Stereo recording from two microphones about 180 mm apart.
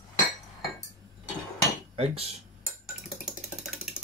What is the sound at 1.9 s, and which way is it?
Speech, 35° right (ahead or behind).